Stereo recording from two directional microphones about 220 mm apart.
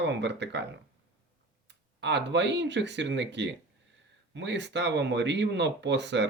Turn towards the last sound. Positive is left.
turn(degrees=-50)  # may be behind; listen again after turning